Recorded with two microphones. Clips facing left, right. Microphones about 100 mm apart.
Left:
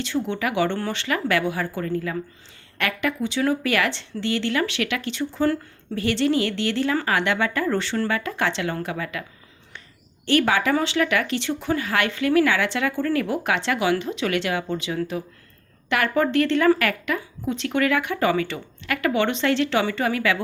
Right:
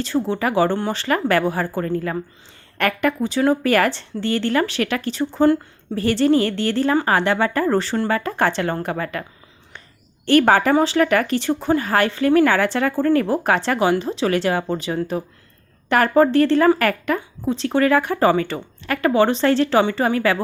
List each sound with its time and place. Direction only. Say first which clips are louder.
0.0 s a woman's voice: right 4 dB; 35° right (ahead or behind)
2.7 s a woman's voice: right 5 dB; 45° right (ahead or behind)
10.2 s a woman's voice: right 5 dB; 45° right (ahead or behind)